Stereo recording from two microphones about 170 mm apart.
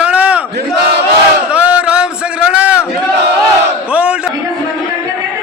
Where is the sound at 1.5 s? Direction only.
5° right (ahead or behind).